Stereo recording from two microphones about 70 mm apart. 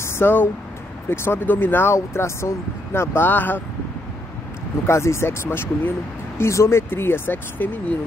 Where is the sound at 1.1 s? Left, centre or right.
Left.